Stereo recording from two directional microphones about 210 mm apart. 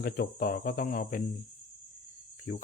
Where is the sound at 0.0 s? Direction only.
45° left (ahead or behind).